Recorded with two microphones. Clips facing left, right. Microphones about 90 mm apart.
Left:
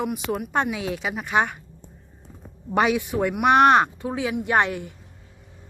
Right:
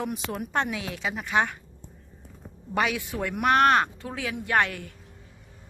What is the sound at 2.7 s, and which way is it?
Speech, 20° left (ahead or behind).